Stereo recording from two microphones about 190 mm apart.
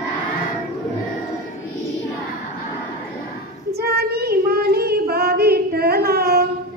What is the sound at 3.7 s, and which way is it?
Child singing, 55° right (ahead or behind).